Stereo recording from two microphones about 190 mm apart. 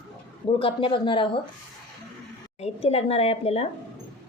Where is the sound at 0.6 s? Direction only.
30° left (ahead or behind).